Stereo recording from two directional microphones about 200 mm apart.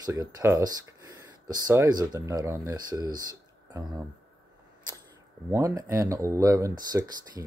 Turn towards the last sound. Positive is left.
turn(degrees=-20)  # may be behind; listen again after turning